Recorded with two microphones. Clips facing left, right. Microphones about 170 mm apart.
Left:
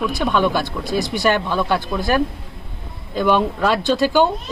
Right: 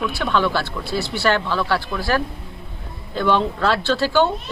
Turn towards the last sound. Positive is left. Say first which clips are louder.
# left 2 dB
turn(degrees=15)  # may be behind; listen again after turning